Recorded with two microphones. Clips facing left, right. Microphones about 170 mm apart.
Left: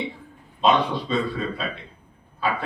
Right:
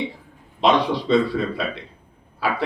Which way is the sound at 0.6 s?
80° right.